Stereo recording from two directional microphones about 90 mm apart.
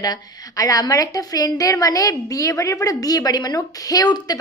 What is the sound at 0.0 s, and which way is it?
A woman's voice, 45° left (ahead or behind).